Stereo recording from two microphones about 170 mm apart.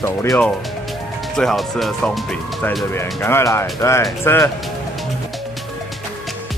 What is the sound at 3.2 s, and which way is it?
Speech, 15° left (ahead or behind).